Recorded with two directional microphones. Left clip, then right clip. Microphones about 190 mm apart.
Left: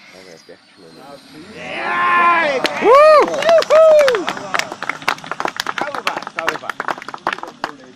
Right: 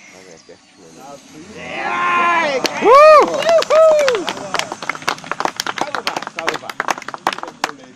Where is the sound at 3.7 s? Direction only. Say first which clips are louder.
Left 2 dB; 35° left (ahead or behind).